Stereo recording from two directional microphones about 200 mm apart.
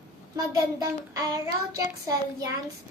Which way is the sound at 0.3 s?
20° right (ahead or behind).